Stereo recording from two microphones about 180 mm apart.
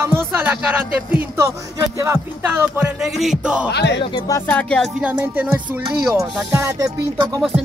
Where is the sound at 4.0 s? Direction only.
25° left (ahead or behind).